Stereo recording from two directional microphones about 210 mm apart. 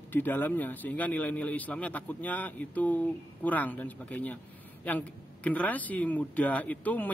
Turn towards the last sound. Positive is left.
turn(degrees=5)  # may be behind; listen again after turning